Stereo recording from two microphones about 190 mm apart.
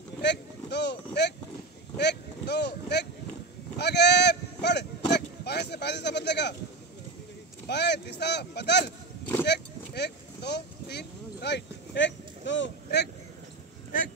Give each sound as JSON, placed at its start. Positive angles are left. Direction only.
{"t": 0.2, "sound": "a sound", "side_deg": 65}
{"t": 3.7, "sound": "sheep", "side_deg": 60}
{"t": 7.6, "sound": "speech", "side_deg": 65}